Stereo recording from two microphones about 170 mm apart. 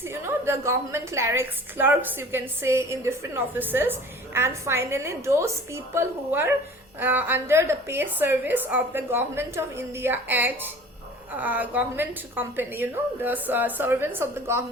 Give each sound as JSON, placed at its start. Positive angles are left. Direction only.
{"t": 0.0, "sound": "a woman's voice", "side_deg": -15}